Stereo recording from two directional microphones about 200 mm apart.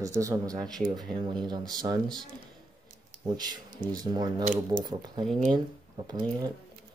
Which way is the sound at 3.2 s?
20° right (ahead or behind).